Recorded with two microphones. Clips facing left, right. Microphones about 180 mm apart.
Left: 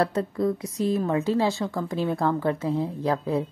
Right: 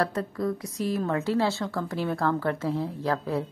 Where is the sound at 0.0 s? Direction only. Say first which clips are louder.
Left 3 dB; 25° left (ahead or behind).